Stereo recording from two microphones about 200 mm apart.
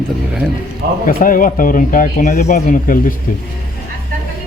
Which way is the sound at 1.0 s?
45° left (ahead or behind).